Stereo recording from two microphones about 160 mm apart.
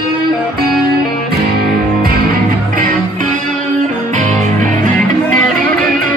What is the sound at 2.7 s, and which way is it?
Music, 65° right (ahead or behind).